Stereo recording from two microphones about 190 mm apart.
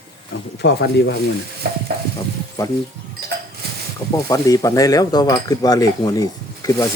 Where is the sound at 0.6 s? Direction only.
60° left (ahead or behind).